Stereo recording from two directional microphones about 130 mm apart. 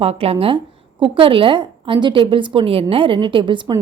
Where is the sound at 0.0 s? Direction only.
50° right (ahead or behind).